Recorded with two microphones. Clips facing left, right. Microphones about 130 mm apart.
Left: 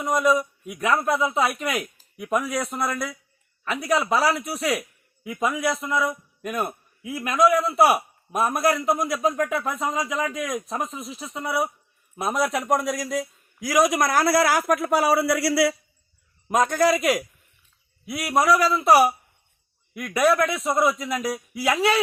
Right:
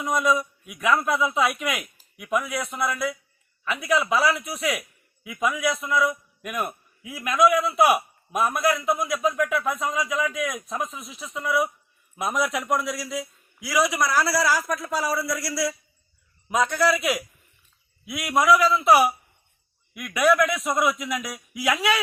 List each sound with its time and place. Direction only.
0.0 s a man's voice: 35° left (ahead or behind); by 15.7 s 65° left (ahead or behind)
16.5 s a man's voice: 45° left (ahead or behind); by 22.0 s 30° left (ahead or behind)